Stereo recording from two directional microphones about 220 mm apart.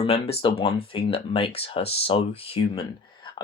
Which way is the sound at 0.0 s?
25° left (ahead or behind).